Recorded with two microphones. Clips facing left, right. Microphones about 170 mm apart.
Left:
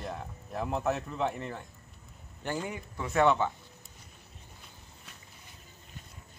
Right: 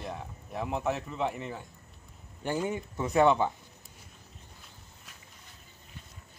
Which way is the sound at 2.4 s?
15° right (ahead or behind).